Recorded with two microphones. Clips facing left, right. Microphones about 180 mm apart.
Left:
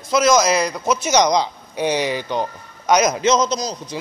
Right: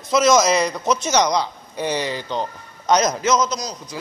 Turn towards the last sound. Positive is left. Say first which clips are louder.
# left 4 dB
turn(degrees=25)  # may be behind; listen again after turning